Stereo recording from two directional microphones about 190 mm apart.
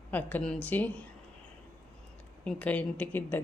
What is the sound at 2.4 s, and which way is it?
Speech, 5° left (ahead or behind).